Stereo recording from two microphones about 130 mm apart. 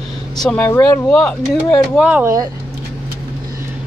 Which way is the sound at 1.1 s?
Centre (ahead or behind).